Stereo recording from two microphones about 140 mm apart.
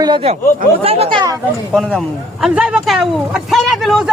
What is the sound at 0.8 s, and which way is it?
Speech, 45° right (ahead or behind).